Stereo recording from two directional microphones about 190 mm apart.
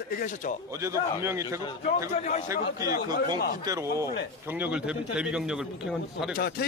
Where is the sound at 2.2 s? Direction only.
40° left (ahead or behind).